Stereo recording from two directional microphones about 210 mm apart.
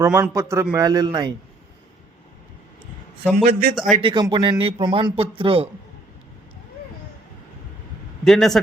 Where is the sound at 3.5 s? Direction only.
45° right (ahead or behind).